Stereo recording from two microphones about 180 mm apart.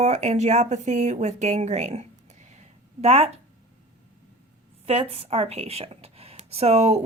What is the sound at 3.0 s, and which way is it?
Speech, 35° right (ahead or behind).